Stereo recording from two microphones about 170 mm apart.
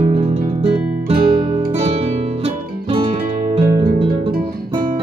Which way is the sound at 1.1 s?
35° right (ahead or behind).